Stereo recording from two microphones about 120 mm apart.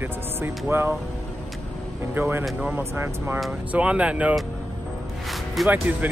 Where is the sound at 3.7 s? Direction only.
10° right (ahead or behind).